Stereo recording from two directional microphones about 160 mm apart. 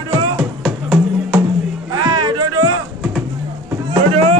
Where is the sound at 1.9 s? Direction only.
25° right (ahead or behind).